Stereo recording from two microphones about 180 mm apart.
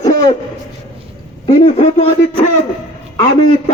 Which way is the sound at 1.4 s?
30° left (ahead or behind).